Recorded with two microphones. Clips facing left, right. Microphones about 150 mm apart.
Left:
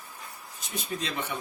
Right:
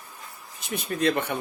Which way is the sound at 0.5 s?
60° right (ahead or behind).